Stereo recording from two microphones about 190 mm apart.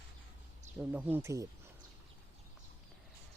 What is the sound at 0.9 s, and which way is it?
Speech, 10° right (ahead or behind).